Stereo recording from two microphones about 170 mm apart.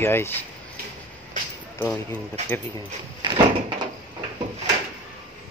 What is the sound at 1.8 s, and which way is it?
Speech, 15° left (ahead or behind).